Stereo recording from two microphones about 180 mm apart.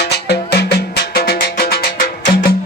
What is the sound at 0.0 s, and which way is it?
Music, 65° left (ahead or behind).